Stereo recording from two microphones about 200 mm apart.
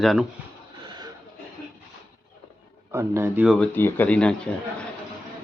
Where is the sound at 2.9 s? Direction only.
10° right (ahead or behind).